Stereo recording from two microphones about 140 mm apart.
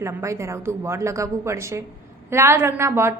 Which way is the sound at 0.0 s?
20° right (ahead or behind).